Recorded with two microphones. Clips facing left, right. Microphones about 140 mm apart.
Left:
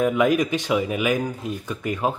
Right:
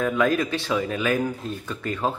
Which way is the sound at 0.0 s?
20° left (ahead or behind).